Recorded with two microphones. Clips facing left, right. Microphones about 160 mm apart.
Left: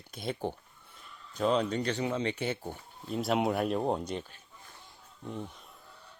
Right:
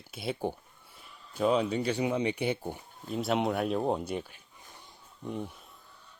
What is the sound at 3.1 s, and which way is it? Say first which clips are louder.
Speech: even; centre (ahead or behind).